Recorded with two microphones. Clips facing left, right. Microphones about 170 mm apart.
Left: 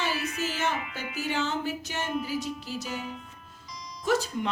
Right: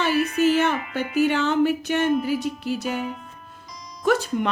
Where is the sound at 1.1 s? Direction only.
60° right (ahead or behind).